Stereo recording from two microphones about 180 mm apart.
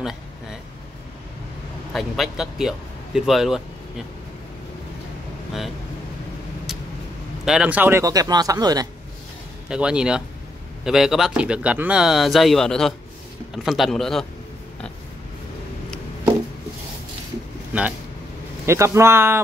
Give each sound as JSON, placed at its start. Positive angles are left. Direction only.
{"t": 1.9, "sound": "speech", "side_deg": 0}
{"t": 7.4, "sound": "speech", "side_deg": -5}
{"t": 9.7, "sound": "speech", "side_deg": -5}
{"t": 17.7, "sound": "a man's voice", "side_deg": -10}